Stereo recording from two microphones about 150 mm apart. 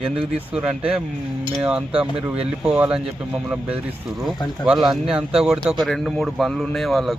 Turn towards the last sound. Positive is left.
turn(degrees=0)  # may be behind; listen again after turning